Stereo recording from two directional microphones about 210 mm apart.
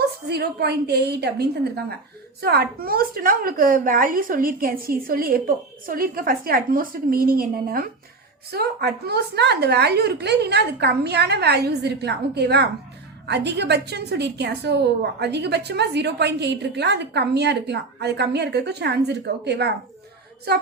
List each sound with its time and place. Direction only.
0.3 s a woman's voice: 50° right (ahead or behind)